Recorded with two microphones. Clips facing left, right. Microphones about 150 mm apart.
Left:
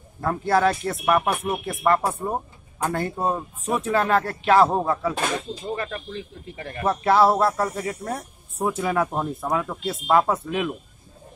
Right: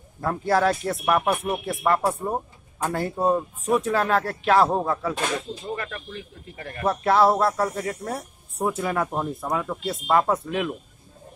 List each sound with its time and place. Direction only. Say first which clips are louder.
0.2 s speech: left 1 dB; centre (ahead or behind)
5.8 s speech: left 3 dB; 25° left (ahead or behind)
6.8 s speech: left 1 dB; centre (ahead or behind)